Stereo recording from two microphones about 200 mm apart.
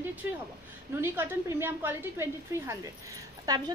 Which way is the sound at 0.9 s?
10° right (ahead or behind).